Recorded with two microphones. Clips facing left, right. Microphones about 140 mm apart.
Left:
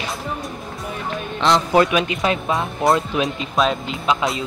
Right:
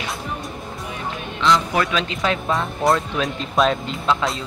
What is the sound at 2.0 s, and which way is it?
Speech, 15° left (ahead or behind).